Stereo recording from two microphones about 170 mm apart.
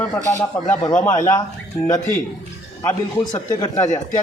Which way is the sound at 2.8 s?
25° left (ahead or behind).